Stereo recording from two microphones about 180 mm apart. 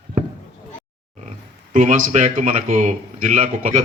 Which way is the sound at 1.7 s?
45° right (ahead or behind).